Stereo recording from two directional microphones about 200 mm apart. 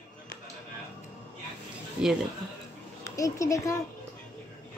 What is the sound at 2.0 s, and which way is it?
Speech, 5° right (ahead or behind).